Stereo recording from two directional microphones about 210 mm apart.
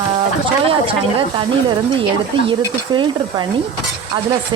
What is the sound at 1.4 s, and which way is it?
Speech, 25° right (ahead or behind).